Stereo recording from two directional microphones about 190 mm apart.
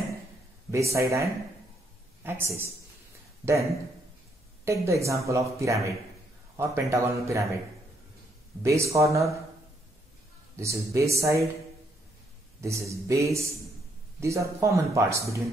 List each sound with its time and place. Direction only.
0.7 s speech: 15° right (ahead or behind)
4.6 s speech: 15° right (ahead or behind)
8.6 s speech: 15° right (ahead or behind)
10.5 s speech: 15° right (ahead or behind)
12.6 s speech: 15° right (ahead or behind)